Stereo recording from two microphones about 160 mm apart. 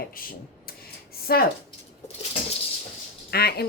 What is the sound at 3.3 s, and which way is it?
Speech, 80° left.